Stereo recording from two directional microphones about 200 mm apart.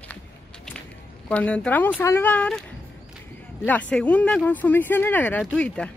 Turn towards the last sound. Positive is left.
turn(degrees=5)  # may be behind; listen again after turning